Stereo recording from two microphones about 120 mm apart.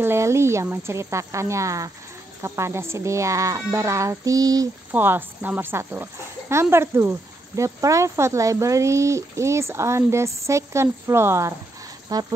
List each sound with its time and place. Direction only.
0.0 s speech: 20° right (ahead or behind)
4.9 s speech: 15° right (ahead or behind); by 12.2 s 30° right (ahead or behind)